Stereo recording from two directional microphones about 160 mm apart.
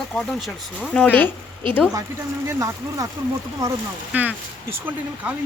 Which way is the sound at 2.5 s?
20° right (ahead or behind).